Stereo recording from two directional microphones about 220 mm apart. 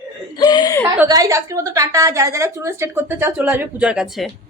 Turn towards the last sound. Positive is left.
turn(degrees=-5)  # may be behind; listen again after turning